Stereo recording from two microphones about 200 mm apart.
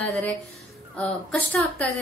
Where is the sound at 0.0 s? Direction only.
5° left (ahead or behind).